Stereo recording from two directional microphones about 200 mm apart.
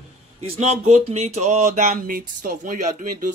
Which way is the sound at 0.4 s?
35° right (ahead or behind).